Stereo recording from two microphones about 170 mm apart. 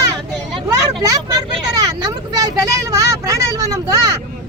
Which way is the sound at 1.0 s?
20° right (ahead or behind).